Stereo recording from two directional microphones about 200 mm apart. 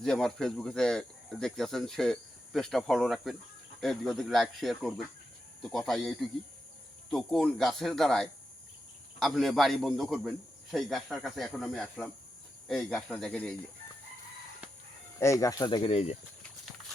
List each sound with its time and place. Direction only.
0.0 s speech: centre (ahead or behind)
15.2 s speech: 15° left (ahead or behind)